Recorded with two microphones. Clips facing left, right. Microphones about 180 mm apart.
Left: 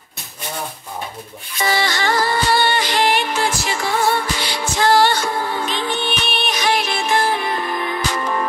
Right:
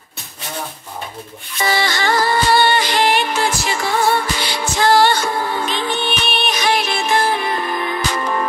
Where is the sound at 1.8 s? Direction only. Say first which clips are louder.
Right 2 dB; 80° right.